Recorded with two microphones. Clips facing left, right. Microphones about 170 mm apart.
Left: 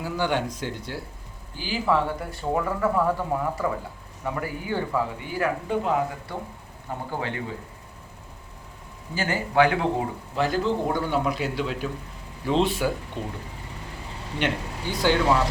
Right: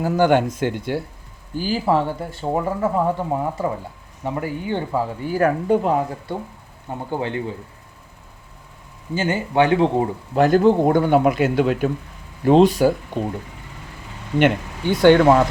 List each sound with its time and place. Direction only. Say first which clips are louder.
0.0 s speech: right 9 dB; 50° right (ahead or behind)
1.5 s speech: right 5 dB; 40° right (ahead or behind); by 5.0 s 25° right (ahead or behind)
5.2 s speech: right 8 dB; 40° right (ahead or behind)
7.1 s speech: right 7 dB; 25° right (ahead or behind)
9.1 s speech: right 3 dB; 20° right (ahead or behind)
10.3 s a man's voice: right 10 dB; 50° right (ahead or behind)
12.5 s speech: right 9 dB; 45° right (ahead or behind)
14.3 s a man's voice: right 10 dB; 60° right (ahead or behind)